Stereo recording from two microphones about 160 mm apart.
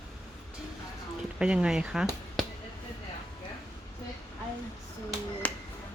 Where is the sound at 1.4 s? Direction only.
5° right (ahead or behind).